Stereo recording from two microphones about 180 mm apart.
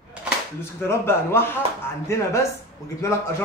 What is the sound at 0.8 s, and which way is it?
Speech, 15° left (ahead or behind).